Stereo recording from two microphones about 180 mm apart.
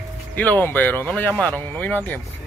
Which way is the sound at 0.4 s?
10° left (ahead or behind).